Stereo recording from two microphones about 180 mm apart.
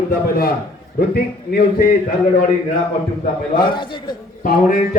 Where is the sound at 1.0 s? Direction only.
60° left (ahead or behind).